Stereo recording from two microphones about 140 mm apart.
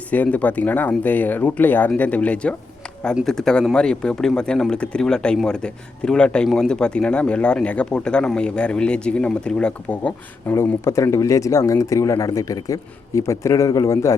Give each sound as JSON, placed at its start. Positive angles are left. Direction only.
{"t": 0.1, "sound": "speech", "side_deg": 10}
{"t": 10.5, "sound": "speech", "side_deg": 20}